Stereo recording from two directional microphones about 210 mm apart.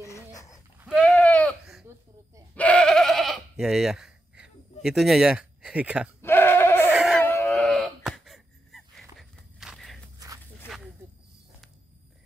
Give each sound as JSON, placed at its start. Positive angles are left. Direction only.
{"t": 0.0, "sound": "a sound", "side_deg": 15}
{"t": 0.7, "sound": "sheep", "side_deg": 0}
{"t": 2.5, "sound": "bleat", "side_deg": 5}
{"t": 4.8, "sound": "speech", "side_deg": 0}
{"t": 6.2, "sound": "goat", "side_deg": 10}
{"t": 6.9, "sound": "sheep", "side_deg": 0}
{"t": 7.2, "sound": "a sound", "side_deg": 10}
{"t": 9.6, "sound": "walk", "side_deg": 0}
{"t": 10.1, "sound": "a sound", "side_deg": -15}
{"t": 10.6, "sound": "snake", "side_deg": 10}